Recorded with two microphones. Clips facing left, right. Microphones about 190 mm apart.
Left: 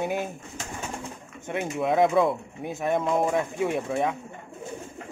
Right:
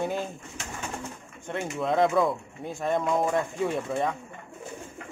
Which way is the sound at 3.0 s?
20° left (ahead or behind).